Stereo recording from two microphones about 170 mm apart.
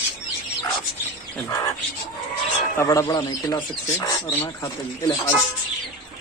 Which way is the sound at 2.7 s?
15° left (ahead or behind).